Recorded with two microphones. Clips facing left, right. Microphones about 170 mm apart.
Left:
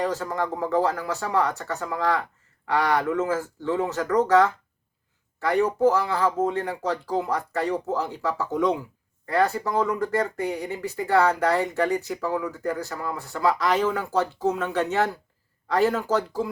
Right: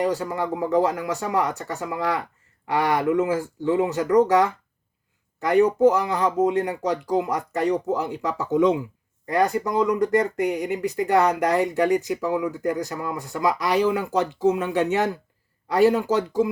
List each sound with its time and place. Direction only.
0.0 s speech: 15° right (ahead or behind)